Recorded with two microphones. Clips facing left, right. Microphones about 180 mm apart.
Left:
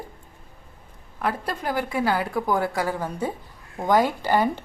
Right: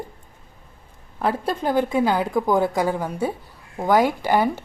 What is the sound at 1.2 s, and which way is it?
A woman's voice, 25° right (ahead or behind).